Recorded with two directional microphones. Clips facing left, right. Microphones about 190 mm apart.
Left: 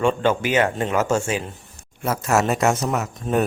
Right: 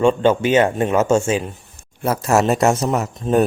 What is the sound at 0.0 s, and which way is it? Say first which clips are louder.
A man's voice: right 5 dB; 25° right (ahead or behind).